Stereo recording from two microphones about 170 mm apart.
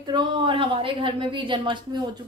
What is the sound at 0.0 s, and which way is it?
A woman's voice, 25° right (ahead or behind).